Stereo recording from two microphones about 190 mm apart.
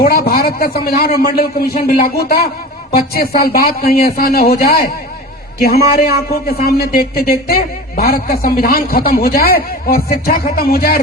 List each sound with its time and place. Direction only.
0.0 s speech: 55° left (ahead or behind)